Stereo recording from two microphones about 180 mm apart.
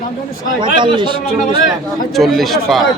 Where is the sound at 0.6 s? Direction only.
25° right (ahead or behind).